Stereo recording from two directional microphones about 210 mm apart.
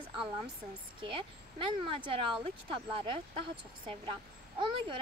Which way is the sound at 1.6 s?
25° right (ahead or behind).